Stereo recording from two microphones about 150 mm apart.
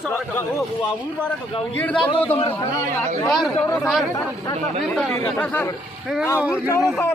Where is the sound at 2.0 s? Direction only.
40° left (ahead or behind).